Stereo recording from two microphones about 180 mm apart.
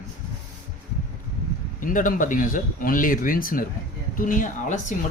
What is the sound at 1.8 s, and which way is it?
Speech, 45° left (ahead or behind).